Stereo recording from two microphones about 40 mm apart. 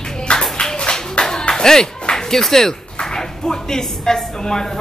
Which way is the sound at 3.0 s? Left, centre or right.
Centre.